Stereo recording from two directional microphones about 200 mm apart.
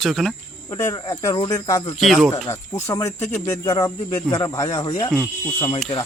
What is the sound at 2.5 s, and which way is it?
Speech, 15° left (ahead or behind).